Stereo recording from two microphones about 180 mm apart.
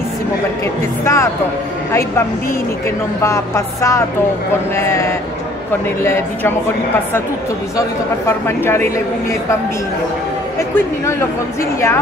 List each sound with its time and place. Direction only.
1.0 s a man's voice: 15° left (ahead or behind)
6.0 s a man's voice: 15° left (ahead or behind)
8.3 s a man's voice: 15° left (ahead or behind)